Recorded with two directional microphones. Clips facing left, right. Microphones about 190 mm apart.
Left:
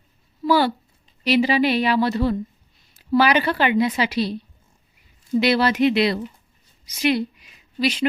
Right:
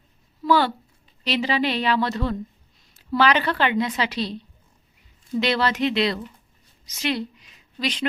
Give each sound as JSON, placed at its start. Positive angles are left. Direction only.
{"t": 0.4, "sound": "a woman's voice", "side_deg": 10}